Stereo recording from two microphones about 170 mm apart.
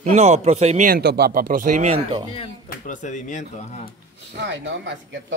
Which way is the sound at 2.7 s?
50° left (ahead or behind).